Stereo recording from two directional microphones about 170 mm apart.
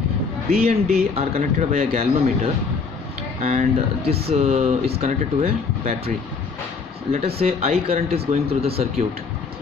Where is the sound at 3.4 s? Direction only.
40° right (ahead or behind).